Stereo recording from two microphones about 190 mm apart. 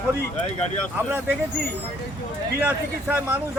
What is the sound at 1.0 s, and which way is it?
Speech, 10° right (ahead or behind).